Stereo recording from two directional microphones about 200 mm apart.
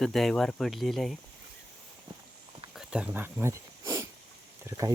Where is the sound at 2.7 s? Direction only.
5° right (ahead or behind).